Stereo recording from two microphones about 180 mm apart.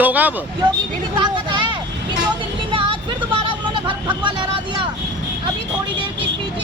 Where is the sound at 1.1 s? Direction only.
25° right (ahead or behind).